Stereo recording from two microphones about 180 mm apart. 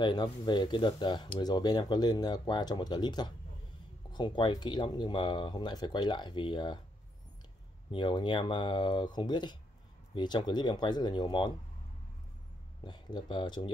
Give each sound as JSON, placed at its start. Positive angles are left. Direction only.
{"t": 0.0, "sound": "speech", "side_deg": 25}
{"t": 7.9, "sound": "speech", "side_deg": 25}
{"t": 12.8, "sound": "speech", "side_deg": 25}